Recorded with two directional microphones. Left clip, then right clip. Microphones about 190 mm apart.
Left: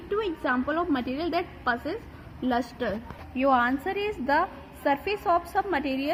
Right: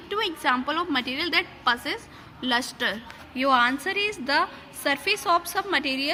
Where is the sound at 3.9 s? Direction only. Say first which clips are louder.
Right 1 dB; centre (ahead or behind).